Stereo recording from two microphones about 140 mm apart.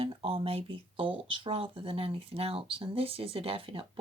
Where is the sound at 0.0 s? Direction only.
45° right (ahead or behind).